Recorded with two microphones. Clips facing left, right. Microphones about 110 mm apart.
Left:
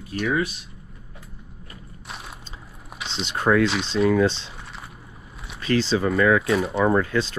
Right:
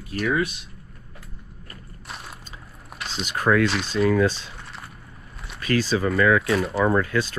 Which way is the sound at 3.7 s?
Centre (ahead or behind).